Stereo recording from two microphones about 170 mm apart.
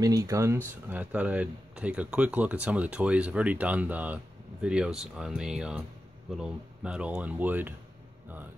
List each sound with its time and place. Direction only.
0.0 s speech: 20° right (ahead or behind)